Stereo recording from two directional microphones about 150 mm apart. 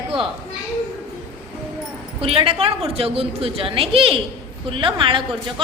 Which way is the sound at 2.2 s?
40° right (ahead or behind).